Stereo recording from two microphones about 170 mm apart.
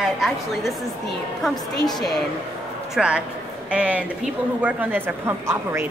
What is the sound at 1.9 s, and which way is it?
A child's voice, centre (ahead or behind).